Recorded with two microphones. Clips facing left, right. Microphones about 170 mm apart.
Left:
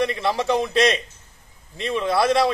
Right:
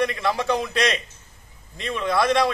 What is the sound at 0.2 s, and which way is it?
Speech, centre (ahead or behind).